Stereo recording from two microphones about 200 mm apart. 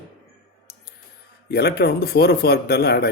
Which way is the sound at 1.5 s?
55° left (ahead or behind).